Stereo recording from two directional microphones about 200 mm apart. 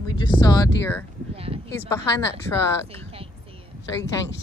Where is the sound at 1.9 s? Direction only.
15° left (ahead or behind).